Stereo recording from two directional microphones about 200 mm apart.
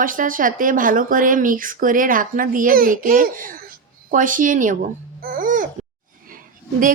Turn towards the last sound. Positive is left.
turn(degrees=-45)  # may be behind; listen again after turning